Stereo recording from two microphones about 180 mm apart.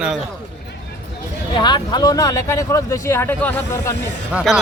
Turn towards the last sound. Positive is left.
turn(degrees=-5)  # may be behind; listen again after turning